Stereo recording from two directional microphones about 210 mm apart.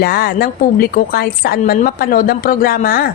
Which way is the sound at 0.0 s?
45° left (ahead or behind).